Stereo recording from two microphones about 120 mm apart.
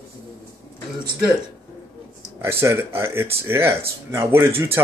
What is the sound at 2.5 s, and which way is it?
Speech, 20° right (ahead or behind).